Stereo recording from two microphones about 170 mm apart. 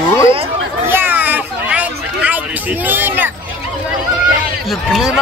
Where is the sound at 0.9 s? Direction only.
10° right (ahead or behind).